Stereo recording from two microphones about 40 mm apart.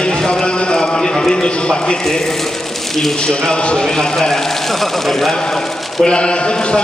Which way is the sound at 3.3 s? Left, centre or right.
Centre.